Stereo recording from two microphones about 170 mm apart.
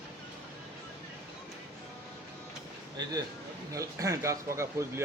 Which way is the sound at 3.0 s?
25° right (ahead or behind).